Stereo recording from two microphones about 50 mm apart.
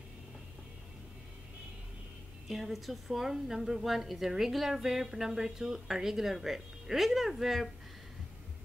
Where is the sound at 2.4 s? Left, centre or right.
Centre.